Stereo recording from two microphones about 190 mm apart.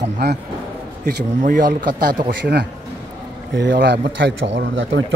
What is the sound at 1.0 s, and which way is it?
Speech, 45° right (ahead or behind).